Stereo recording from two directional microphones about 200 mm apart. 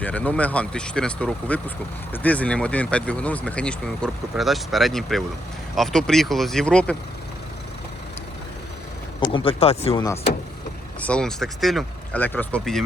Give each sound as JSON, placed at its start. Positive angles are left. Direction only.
{"t": 0.0, "sound": "speech", "side_deg": 5}
{"t": 9.2, "sound": "speech", "side_deg": 25}
{"t": 9.9, "sound": "speech", "side_deg": 15}
{"t": 11.0, "sound": "speech", "side_deg": 5}